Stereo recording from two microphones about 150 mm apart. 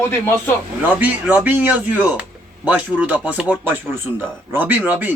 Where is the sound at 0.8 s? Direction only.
10° right (ahead or behind).